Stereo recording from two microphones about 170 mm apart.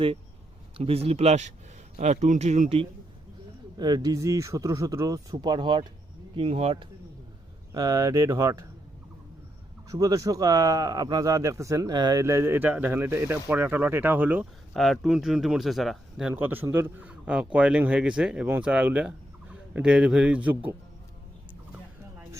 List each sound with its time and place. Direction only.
0.8 s speech: 35° right (ahead or behind)
3.8 s speech: 25° right (ahead or behind)
7.7 s speech: 20° right (ahead or behind)
9.9 s speech: 20° right (ahead or behind)
14.7 s speech: centre (ahead or behind)
16.3 s speech: 10° right (ahead or behind)